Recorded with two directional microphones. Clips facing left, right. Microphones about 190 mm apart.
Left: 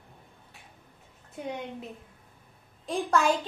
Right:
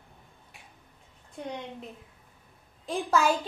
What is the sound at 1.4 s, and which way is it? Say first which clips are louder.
Speech: left 2 dB; 10° left (ahead or behind).